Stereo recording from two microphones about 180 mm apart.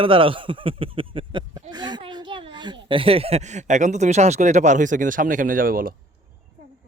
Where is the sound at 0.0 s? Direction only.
30° right (ahead or behind); by 5.9 s 50° right (ahead or behind).